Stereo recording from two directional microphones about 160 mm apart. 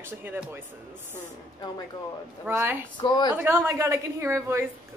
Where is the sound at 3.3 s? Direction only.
15° right (ahead or behind).